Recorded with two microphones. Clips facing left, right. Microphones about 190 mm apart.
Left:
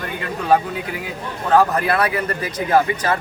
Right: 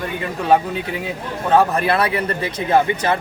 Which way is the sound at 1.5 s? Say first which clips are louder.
Even; 25° right (ahead or behind).